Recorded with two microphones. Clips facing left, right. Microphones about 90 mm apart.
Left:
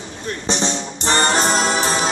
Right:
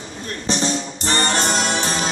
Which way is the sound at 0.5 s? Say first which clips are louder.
Right 1 dB; 25° left (ahead or behind).